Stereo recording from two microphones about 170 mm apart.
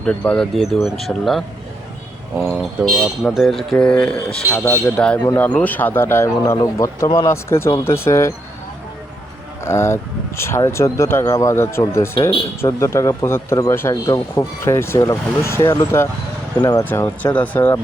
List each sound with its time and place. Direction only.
0.0 s speech: 5° left (ahead or behind)
2.6 s speech: centre (ahead or behind)
5.2 s speech: 20° left (ahead or behind)
9.6 s speech: 15° left (ahead or behind)